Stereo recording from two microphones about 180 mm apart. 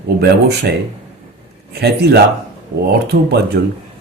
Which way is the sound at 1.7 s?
65° right (ahead or behind).